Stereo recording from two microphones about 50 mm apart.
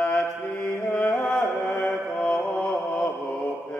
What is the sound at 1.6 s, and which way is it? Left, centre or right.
Mantra, left.